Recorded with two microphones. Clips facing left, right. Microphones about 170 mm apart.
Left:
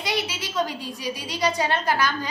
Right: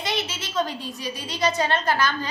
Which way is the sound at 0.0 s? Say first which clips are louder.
Left 1 dB; 10° left (ahead or behind).